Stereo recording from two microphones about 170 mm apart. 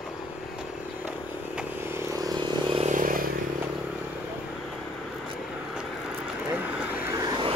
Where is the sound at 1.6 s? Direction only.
15° right (ahead or behind).